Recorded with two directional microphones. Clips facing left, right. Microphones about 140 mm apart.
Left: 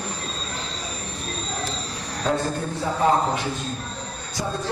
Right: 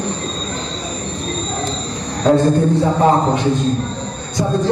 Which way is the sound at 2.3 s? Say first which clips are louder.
Right 12 dB; 20° right (ahead or behind).